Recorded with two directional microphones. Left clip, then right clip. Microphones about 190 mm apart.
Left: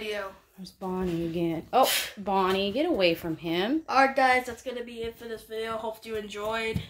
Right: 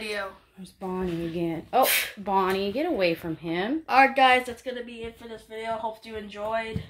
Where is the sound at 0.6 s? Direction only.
Centre (ahead or behind).